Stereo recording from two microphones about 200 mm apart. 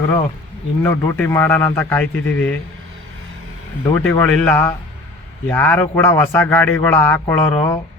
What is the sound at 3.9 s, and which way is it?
Speech, 10° left (ahead or behind).